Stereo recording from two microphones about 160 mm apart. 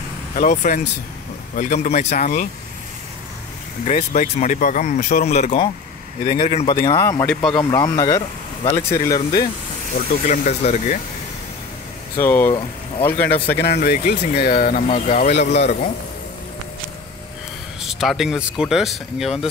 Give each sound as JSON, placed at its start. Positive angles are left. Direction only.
{"t": 0.4, "sound": "speech", "side_deg": 55}
{"t": 1.9, "sound": "speech", "side_deg": 45}
{"t": 3.8, "sound": "speech", "side_deg": 45}
{"t": 5.2, "sound": "speech", "side_deg": 45}
{"t": 6.7, "sound": "speech", "side_deg": 25}
{"t": 10.2, "sound": "speech", "side_deg": 50}
{"t": 12.2, "sound": "speech", "side_deg": 15}
{"t": 13.6, "sound": "speech", "side_deg": 90}
{"t": 14.3, "sound": "speech", "side_deg": 80}
{"t": 15.6, "sound": "speech", "side_deg": 65}
{"t": 17.8, "sound": "speech", "side_deg": 0}